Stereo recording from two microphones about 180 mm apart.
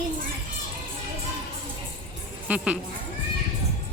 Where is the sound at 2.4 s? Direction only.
5° right (ahead or behind).